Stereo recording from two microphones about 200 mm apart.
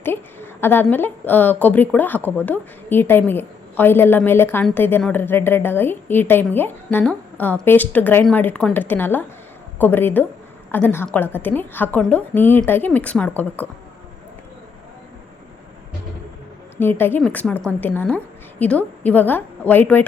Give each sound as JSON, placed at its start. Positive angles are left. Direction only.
{"t": 0.0, "sound": "a woman's voice", "side_deg": 10}
{"t": 16.8, "sound": "a woman's voice", "side_deg": 10}